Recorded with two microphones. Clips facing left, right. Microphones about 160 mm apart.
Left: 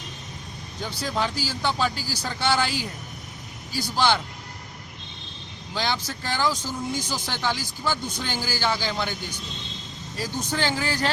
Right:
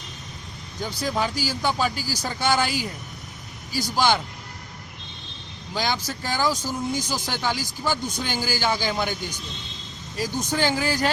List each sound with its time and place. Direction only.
0.9 s speech: 15° right (ahead or behind)
5.7 s speech: 10° right (ahead or behind)
10.2 s speech: 15° right (ahead or behind)